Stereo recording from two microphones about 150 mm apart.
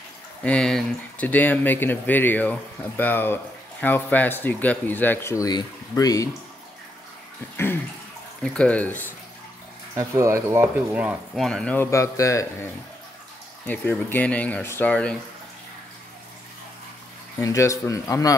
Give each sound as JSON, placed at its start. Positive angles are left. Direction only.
{"t": 0.4, "sound": "speech", "side_deg": 5}
{"t": 8.4, "sound": "speech", "side_deg": 10}
{"t": 9.9, "sound": "speech", "side_deg": -20}
{"t": 11.3, "sound": "speech", "side_deg": 5}
{"t": 13.7, "sound": "speech", "side_deg": 10}
{"t": 17.4, "sound": "a man's voice", "side_deg": 20}